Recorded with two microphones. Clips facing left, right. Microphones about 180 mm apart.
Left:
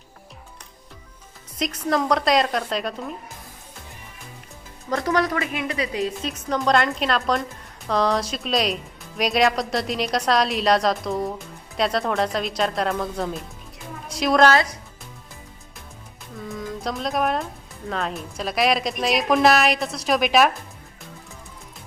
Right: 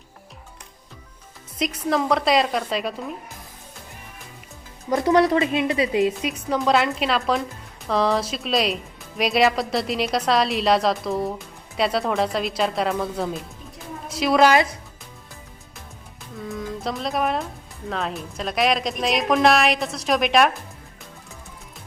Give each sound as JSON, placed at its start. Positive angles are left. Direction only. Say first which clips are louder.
{"t": 1.5, "sound": "speech", "louder": "even", "side_deg": -10}
{"t": 4.9, "sound": "a woman's voice", "louder": "right 5 dB", "side_deg": -25}
{"t": 6.5, "sound": "speech", "louder": "even", "side_deg": -5}
{"t": 16.4, "sound": "speech", "louder": "right 1 dB", "side_deg": 0}